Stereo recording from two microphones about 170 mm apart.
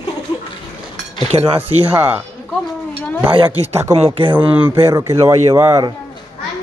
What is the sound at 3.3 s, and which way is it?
Speech, 35° right (ahead or behind).